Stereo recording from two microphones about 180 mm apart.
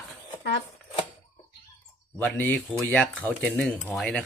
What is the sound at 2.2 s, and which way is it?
Speech, 10° left (ahead or behind).